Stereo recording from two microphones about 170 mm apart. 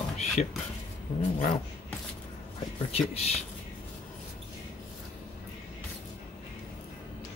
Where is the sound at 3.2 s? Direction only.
40° left (ahead or behind).